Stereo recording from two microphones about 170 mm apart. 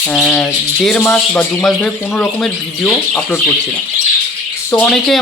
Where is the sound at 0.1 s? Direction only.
5° left (ahead or behind).